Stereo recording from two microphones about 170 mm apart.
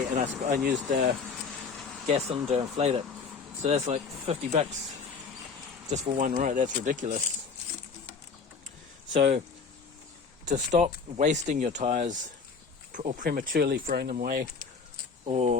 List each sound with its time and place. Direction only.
0.2 s speech: 50° right (ahead or behind)
1.8 s vehicle: centre (ahead or behind)
2.0 s speech: 40° right (ahead or behind)
5.9 s speech: 45° right (ahead or behind)
10.4 s speech: 45° right (ahead or behind); by 14.4 s 60° right (ahead or behind)
15.3 s speech: 40° right (ahead or behind)